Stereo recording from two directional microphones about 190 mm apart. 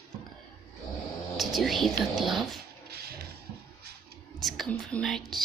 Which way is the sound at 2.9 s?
55° right (ahead or behind).